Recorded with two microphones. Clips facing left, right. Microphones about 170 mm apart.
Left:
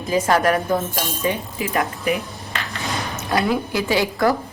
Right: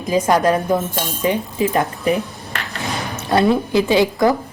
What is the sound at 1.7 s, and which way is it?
Speech, 35° right (ahead or behind).